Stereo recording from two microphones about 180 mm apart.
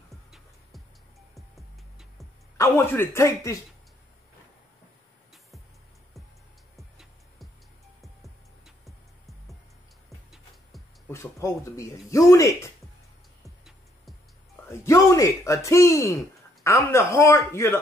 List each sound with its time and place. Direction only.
0.1 s music: centre (ahead or behind)
2.5 s speech: 15° left (ahead or behind)
6.8 s music: centre (ahead or behind)
11.1 s speech: 15° left (ahead or behind)
13.4 s music: centre (ahead or behind)
14.7 s speech: 15° left (ahead or behind)